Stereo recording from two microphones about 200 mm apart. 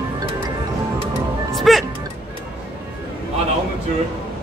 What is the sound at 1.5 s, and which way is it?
Music, centre (ahead or behind).